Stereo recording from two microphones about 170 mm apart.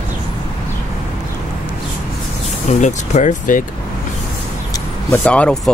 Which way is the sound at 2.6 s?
45° left (ahead or behind).